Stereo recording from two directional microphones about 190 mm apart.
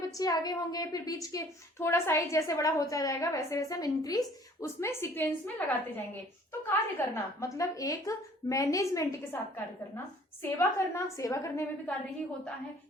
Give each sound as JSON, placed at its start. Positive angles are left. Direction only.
{"t": 0.2, "sound": "a woman's voice", "side_deg": 20}
{"t": 6.7, "sound": "a woman's voice", "side_deg": 10}
{"t": 10.4, "sound": "a woman's voice", "side_deg": 15}